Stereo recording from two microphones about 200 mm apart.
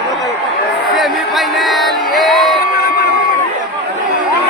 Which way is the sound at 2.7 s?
50° left (ahead or behind).